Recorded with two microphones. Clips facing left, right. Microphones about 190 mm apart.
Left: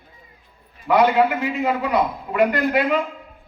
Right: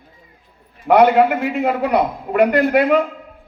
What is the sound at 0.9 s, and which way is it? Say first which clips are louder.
A man's voice: right 4 dB; 60° right (ahead or behind).